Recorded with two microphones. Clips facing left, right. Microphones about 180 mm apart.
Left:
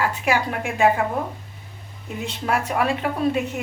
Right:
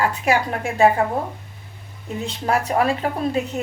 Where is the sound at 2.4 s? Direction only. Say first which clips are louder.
Right 3 dB; 35° right (ahead or behind).